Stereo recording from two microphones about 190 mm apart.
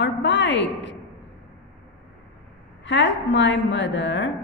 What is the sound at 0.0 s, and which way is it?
Speech, 70° left (ahead or behind).